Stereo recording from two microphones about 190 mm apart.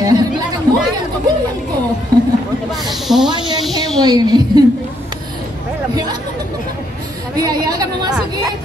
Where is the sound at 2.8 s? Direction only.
Centre (ahead or behind).